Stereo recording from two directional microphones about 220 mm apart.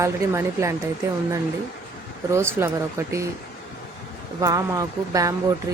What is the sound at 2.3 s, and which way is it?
Speech, 10° right (ahead or behind).